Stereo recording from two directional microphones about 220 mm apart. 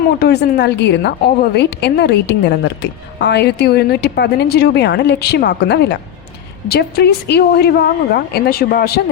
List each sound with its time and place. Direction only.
0.2 s a woman's voice: 45° left (ahead or behind)